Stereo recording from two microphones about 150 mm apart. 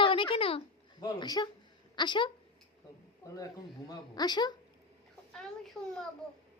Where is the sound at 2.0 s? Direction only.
30° left (ahead or behind).